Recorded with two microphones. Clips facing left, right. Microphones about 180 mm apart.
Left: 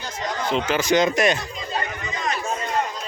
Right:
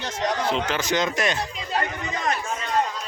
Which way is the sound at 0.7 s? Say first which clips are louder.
Left 5 dB; 10° left (ahead or behind).